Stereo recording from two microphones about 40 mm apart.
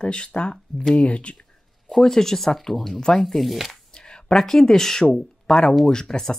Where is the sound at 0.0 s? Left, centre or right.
Left.